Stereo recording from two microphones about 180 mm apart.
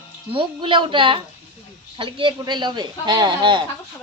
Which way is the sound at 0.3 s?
30° right (ahead or behind).